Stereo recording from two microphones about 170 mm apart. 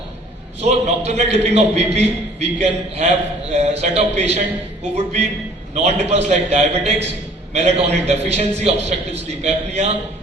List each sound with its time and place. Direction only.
0.6 s a man's voice: 40° right (ahead or behind)